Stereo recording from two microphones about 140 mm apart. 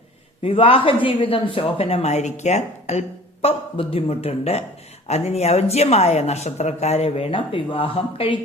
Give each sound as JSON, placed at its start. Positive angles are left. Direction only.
{"t": 0.4, "sound": "speech", "side_deg": 40}